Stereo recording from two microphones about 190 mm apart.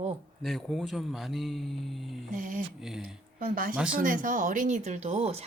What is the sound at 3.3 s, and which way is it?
Speech, 50° right (ahead or behind).